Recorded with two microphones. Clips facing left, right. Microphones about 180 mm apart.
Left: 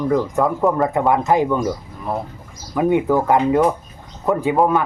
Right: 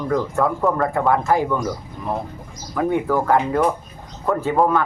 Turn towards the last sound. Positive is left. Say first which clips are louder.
# left 2 dB
turn(degrees=15)  # may be behind; listen again after turning